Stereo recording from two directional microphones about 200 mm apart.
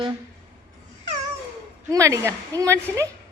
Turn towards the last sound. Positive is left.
turn(degrees=-15)  # may be behind; listen again after turning